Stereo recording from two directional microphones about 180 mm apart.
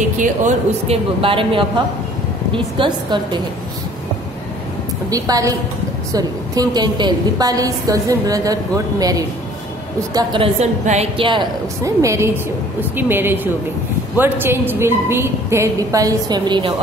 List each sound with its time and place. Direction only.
0.2 s a woman's voice: 45° right (ahead or behind)
1.2 s a woman's voice: 30° right (ahead or behind)
5.1 s a woman's voice: 20° right (ahead or behind)
11.8 s a woman's voice: 15° right (ahead or behind)